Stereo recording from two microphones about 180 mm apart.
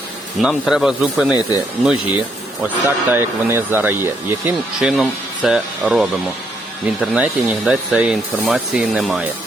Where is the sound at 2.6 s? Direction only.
10° right (ahead or behind).